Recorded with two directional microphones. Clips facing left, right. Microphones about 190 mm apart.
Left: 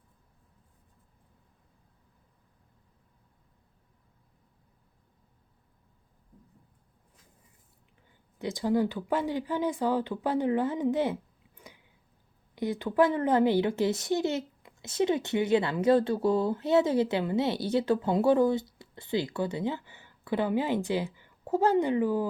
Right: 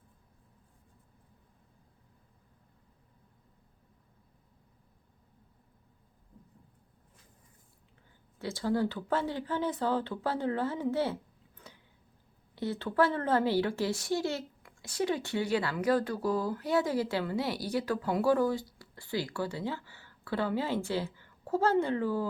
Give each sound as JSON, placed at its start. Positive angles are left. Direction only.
{"t": 8.4, "sound": "speech", "side_deg": 15}